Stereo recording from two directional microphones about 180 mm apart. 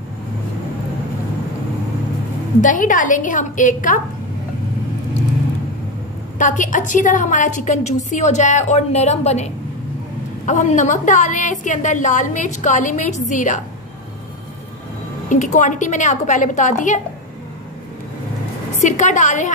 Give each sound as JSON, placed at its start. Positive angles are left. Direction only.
{"t": 2.6, "sound": "a woman's voice", "side_deg": 45}
{"t": 6.3, "sound": "a woman's voice", "side_deg": 45}
{"t": 15.2, "sound": "a woman's voice", "side_deg": 45}
{"t": 18.8, "sound": "a woman's voice", "side_deg": 40}